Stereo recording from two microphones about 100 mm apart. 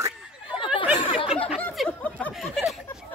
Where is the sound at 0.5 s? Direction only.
60° left (ahead or behind).